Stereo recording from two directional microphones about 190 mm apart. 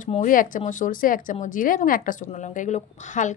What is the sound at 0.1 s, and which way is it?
Speech, 45° left (ahead or behind).